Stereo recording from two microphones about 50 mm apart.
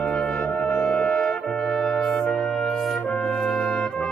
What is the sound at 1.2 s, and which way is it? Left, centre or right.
Brass instrument, centre.